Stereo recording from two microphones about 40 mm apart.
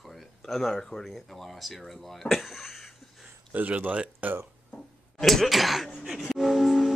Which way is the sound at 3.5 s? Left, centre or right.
Right.